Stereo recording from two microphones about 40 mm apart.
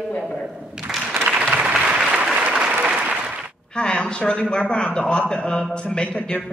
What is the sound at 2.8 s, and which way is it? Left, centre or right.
Applause, right.